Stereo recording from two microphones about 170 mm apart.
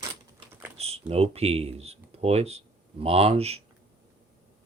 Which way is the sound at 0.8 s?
35° right (ahead or behind).